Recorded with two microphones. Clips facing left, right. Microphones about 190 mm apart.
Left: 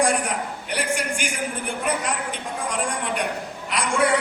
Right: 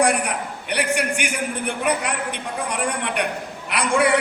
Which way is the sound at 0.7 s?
65° right (ahead or behind).